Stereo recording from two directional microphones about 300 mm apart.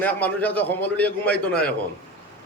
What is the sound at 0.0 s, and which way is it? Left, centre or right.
A man's voice, centre.